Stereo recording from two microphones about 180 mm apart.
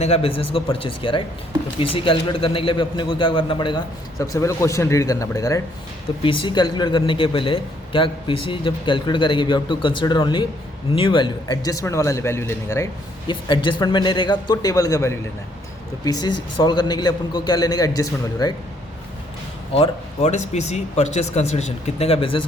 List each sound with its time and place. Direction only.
0.0 s speech: 35° left (ahead or behind)
19.7 s speech: 35° left (ahead or behind)